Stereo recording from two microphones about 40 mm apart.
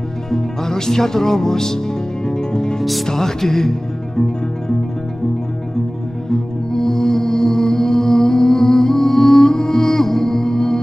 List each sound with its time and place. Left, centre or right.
0.3 s music: centre
6.3 s music: centre